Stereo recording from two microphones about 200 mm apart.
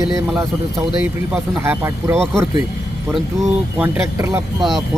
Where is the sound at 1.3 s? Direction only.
10° right (ahead or behind).